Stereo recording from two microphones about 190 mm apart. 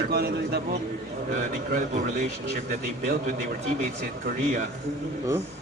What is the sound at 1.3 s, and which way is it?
A man's voice, 40° right (ahead or behind).